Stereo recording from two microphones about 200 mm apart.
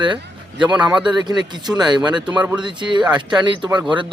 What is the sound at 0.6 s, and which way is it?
Speech, 5° right (ahead or behind).